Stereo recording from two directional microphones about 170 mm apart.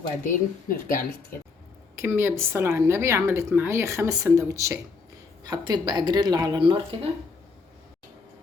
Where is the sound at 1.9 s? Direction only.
15° right (ahead or behind); by 7.0 s 30° right (ahead or behind).